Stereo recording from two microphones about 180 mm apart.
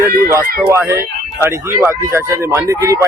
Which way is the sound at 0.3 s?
15° right (ahead or behind).